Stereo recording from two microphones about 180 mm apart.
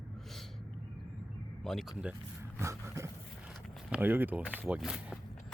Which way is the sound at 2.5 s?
15° right (ahead or behind).